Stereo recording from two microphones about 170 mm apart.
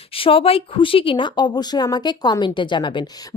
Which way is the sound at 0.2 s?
30° left (ahead or behind).